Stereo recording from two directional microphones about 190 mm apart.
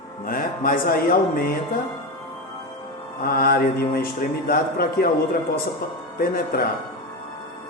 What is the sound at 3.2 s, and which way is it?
Mantra, 50° left (ahead or behind).